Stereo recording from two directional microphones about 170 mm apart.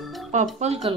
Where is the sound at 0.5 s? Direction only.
40° right (ahead or behind).